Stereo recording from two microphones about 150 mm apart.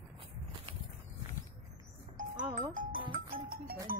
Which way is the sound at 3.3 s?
80° right.